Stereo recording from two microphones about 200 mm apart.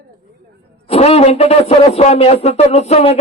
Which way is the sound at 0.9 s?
30° left (ahead or behind).